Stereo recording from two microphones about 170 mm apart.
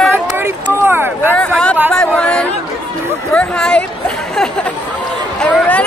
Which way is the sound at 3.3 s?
5° left (ahead or behind).